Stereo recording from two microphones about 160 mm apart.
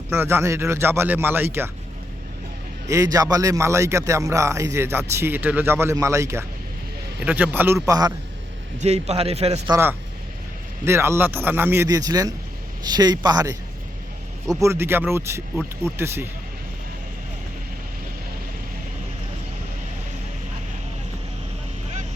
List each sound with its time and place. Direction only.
0.1 s speech: 15° right (ahead or behind)
2.8 s a man's voice: 20° right (ahead or behind)
8.8 s a man's voice: 40° right (ahead or behind)
9.6 s a man's voice: 20° right (ahead or behind)
14.6 s speech: 15° right (ahead or behind)